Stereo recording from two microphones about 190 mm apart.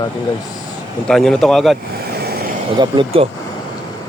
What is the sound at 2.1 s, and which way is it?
Vehicle, 55° right (ahead or behind).